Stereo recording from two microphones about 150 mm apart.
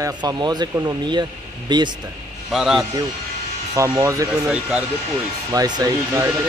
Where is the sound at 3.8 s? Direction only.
20° right (ahead or behind).